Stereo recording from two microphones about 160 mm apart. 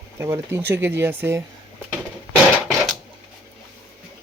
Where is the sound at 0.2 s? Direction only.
15° right (ahead or behind).